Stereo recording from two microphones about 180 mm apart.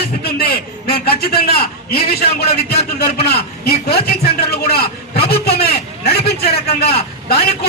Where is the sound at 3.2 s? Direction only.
60° left (ahead or behind).